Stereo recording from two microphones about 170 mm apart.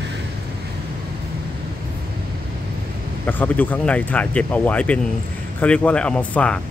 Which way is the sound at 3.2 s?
10° left (ahead or behind).